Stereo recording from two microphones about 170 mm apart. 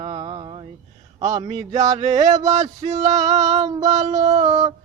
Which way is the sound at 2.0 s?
40° right (ahead or behind).